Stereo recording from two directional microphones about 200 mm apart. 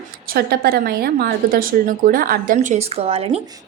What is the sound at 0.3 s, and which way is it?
A woman's voice, 50° right (ahead or behind).